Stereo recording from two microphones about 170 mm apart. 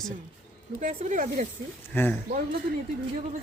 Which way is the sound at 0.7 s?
45° right (ahead or behind).